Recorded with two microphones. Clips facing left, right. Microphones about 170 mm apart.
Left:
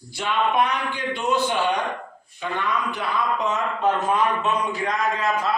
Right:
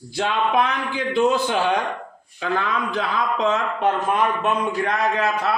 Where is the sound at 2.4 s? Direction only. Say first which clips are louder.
Right 2 dB; 90° right.